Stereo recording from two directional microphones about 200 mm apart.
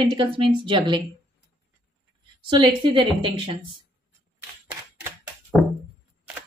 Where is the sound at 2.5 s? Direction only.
25° right (ahead or behind).